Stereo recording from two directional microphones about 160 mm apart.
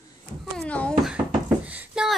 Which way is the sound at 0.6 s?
10° left (ahead or behind).